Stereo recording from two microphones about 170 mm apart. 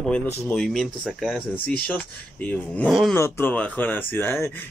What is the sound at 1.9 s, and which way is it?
Speech, 10° left (ahead or behind).